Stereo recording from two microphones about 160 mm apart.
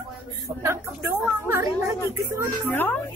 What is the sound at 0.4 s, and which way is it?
Speech, 20° right (ahead or behind).